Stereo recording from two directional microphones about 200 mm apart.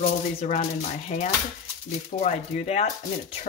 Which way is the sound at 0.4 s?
35° left (ahead or behind).